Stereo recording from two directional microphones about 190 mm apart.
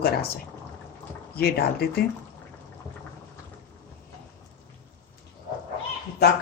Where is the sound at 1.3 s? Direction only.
55° left (ahead or behind).